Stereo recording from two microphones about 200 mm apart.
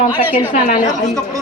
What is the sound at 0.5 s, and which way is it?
Speech, 40° left (ahead or behind).